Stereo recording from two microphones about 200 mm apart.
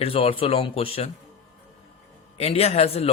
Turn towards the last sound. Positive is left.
turn(degrees=30)  # may be behind; listen again after turning